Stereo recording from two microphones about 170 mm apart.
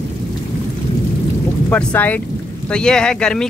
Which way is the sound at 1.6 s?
10° left (ahead or behind).